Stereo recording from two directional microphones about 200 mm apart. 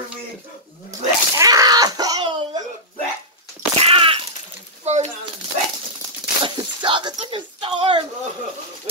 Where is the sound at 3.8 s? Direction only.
30° right (ahead or behind).